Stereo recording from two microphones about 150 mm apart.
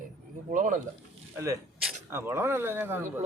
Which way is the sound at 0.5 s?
60° right (ahead or behind).